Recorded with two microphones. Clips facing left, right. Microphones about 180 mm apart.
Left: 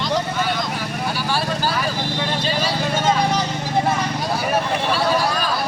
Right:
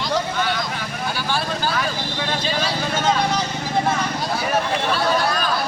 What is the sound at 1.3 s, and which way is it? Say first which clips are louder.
Vehicle: left 1 dB; 5° left (ahead or behind).